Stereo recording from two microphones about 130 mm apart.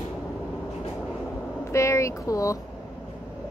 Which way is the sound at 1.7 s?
20° left (ahead or behind).